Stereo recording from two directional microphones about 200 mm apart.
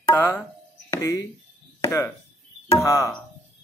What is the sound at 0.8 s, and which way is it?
Music, 15° left (ahead or behind).